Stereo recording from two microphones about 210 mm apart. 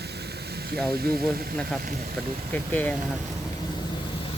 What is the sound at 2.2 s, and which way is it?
Speech, centre (ahead or behind).